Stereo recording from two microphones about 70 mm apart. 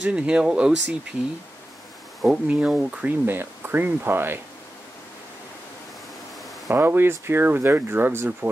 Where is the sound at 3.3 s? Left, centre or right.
Right.